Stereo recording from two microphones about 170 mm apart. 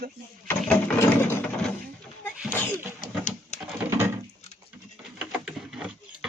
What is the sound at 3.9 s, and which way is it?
Patter, 15° right (ahead or behind).